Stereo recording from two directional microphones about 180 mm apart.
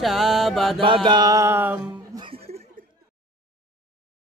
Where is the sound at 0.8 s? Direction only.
25° right (ahead or behind).